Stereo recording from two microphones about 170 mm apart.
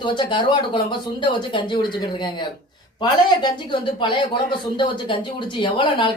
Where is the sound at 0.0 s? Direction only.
25° left (ahead or behind).